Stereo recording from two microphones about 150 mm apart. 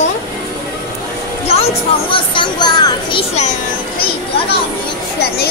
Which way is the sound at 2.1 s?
30° left (ahead or behind).